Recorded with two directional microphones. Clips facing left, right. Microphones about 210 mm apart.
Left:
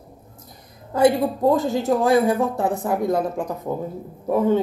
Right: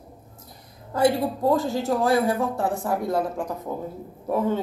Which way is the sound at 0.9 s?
20° left (ahead or behind).